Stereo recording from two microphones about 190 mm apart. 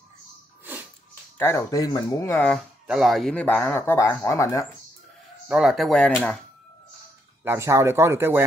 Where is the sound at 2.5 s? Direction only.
Centre (ahead or behind); by 4.6 s 15° left (ahead or behind).